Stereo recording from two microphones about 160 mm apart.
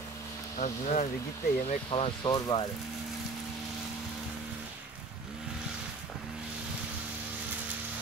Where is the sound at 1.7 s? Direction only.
40° left (ahead or behind).